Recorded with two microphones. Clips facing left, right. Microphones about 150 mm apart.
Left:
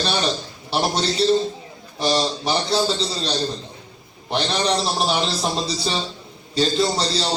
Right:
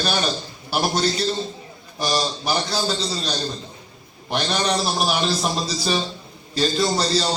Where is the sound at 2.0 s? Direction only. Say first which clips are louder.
Left 3 dB; 25° left (ahead or behind).